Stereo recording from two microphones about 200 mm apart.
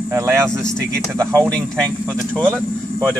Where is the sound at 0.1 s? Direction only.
15° right (ahead or behind).